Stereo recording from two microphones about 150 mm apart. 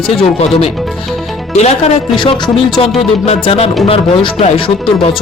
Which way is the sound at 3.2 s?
40° left (ahead or behind).